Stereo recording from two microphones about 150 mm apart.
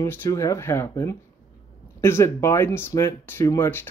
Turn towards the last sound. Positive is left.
turn(degrees=15)  # may be behind; listen again after turning